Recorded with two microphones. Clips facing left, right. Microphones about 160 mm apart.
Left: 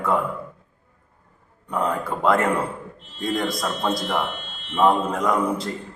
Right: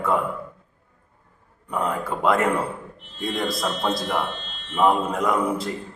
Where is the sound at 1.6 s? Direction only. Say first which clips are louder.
Left 1 dB; centre (ahead or behind).